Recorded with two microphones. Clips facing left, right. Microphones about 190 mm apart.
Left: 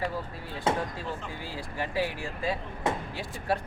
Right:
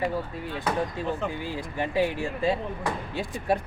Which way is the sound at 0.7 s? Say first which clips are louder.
Even; 25° left (ahead or behind).